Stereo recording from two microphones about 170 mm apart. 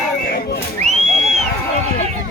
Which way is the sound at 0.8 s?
40° right (ahead or behind).